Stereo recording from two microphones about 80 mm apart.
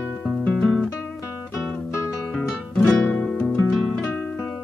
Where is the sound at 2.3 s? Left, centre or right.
Centre.